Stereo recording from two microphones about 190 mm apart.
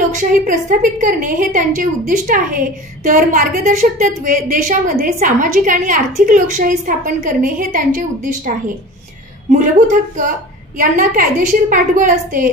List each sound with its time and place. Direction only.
0.1 s a woman's voice: 40° right (ahead or behind)
9.5 s a woman's voice: 40° right (ahead or behind)